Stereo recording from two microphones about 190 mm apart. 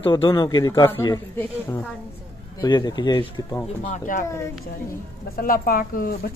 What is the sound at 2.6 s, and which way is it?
Speech, 20° left (ahead or behind).